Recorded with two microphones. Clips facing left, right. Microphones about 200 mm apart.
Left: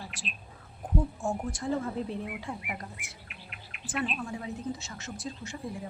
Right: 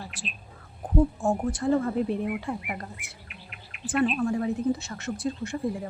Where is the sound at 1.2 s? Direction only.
60° right (ahead or behind).